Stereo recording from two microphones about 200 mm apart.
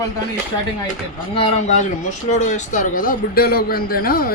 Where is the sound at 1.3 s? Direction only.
35° left (ahead or behind).